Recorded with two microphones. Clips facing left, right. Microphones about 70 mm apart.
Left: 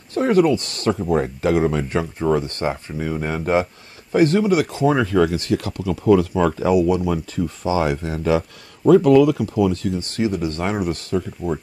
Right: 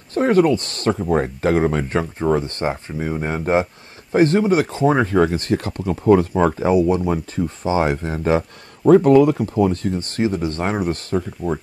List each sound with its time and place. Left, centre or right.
0.1 s speech: right
2.1 s speech: right